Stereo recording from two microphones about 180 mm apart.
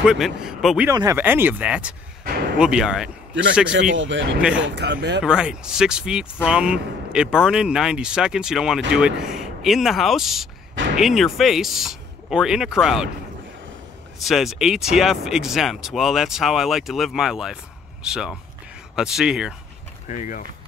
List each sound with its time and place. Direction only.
0.0 s speech: 5° right (ahead or behind)
0.8 s speech: 15° right (ahead or behind)
3.9 s speech: 90° right
4.4 s speech: 5° right (ahead or behind)
4.6 s speech: 80° right
5.2 s speech: 5° right (ahead or behind)
14.2 s speech: centre (ahead or behind)
20.1 s speech: 45° left (ahead or behind)